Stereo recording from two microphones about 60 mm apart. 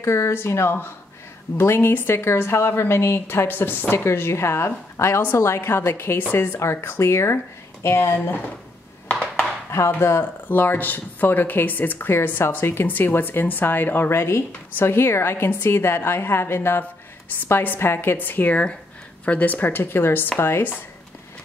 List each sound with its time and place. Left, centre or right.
0.0 s speech: left
9.0 s a sound: centre
9.8 s speech: left
10.5 s speech: left